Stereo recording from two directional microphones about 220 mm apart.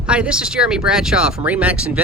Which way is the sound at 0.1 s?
5° right (ahead or behind).